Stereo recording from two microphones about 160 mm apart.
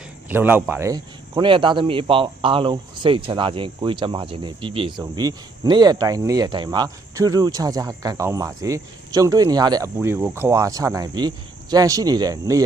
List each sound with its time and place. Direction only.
0.3 s a man's voice: 10° right (ahead or behind)